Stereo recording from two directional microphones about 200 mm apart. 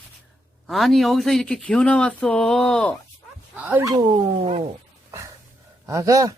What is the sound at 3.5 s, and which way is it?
Speech, 10° right (ahead or behind).